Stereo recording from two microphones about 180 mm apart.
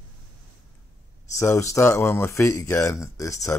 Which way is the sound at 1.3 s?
15° left (ahead or behind).